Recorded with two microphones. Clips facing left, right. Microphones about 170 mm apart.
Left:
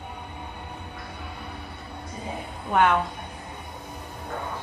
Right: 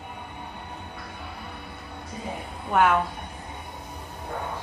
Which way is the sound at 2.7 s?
5° right (ahead or behind).